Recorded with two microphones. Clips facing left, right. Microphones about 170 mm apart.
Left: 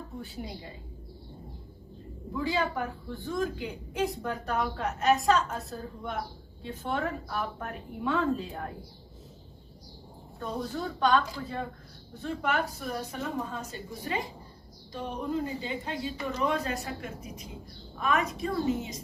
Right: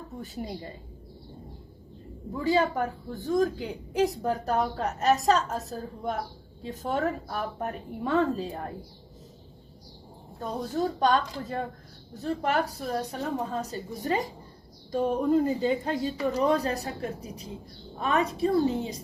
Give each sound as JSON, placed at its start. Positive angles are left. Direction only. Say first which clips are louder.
{"t": 0.2, "sound": "a woman's voice", "louder": "right 5 dB", "side_deg": -45}
{"t": 2.3, "sound": "a woman's voice", "louder": "right 5 dB", "side_deg": -40}
{"t": 10.8, "sound": "a woman's voice", "louder": "right 2 dB", "side_deg": -40}